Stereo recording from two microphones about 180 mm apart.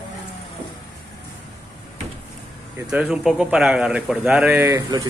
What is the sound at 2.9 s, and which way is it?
A man's voice, 5° right (ahead or behind).